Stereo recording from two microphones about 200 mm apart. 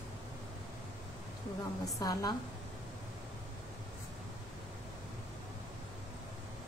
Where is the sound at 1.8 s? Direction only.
20° left (ahead or behind).